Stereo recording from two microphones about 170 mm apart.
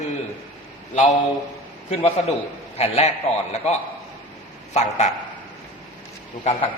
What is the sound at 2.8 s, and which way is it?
A man's voice, 40° left (ahead or behind).